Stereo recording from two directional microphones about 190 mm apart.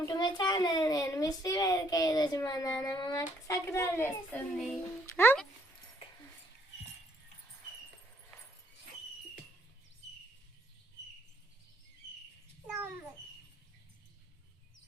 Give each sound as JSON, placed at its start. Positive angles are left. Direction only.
{"t": 0.0, "sound": "a child's voice", "side_deg": 20}
{"t": 5.1, "sound": "speech", "side_deg": 10}